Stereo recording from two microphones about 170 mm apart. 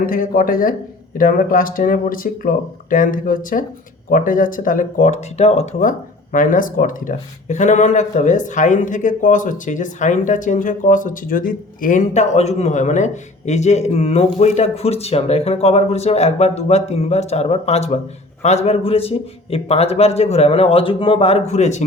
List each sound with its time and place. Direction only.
0.0 s speech: 55° left (ahead or behind)
6.3 s a man's voice: 50° left (ahead or behind)